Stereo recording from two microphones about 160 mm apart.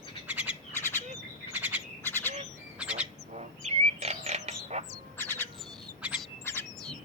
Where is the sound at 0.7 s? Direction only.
15° left (ahead or behind).